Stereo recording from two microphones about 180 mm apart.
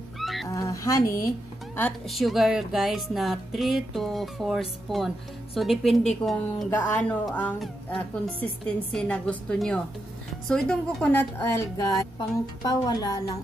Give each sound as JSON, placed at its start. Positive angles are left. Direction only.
{"t": 0.2, "sound": "a sound", "side_deg": 0}
{"t": 0.5, "sound": "speech", "side_deg": 15}
{"t": 1.8, "sound": "speech", "side_deg": 5}